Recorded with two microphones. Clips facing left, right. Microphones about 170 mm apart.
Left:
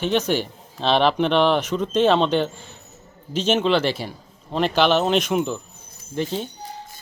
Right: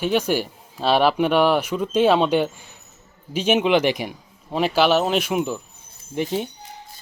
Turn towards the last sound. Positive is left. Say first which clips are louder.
# right 1 dB
turn(degrees=-15)  # may be behind; listen again after turning